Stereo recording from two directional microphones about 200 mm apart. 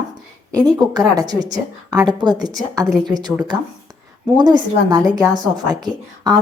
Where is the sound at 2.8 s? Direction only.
Centre (ahead or behind).